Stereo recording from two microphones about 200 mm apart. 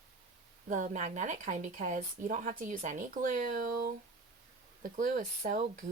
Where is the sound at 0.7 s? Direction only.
40° right (ahead or behind).